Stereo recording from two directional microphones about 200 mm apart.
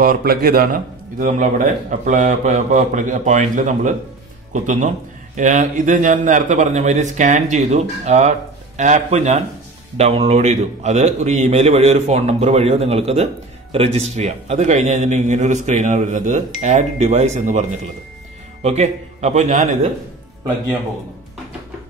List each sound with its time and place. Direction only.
0.0 s a man's voice: 45° right (ahead or behind)